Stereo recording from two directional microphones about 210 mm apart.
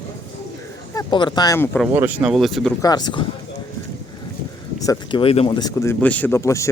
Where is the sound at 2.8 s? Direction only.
20° left (ahead or behind).